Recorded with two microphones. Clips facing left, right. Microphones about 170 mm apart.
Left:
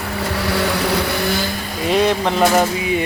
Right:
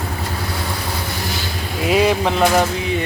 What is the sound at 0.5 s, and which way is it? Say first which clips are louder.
Vehicle: left 7 dB; 80° left.